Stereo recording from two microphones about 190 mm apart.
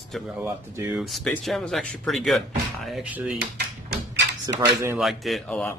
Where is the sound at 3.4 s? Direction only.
65° right (ahead or behind).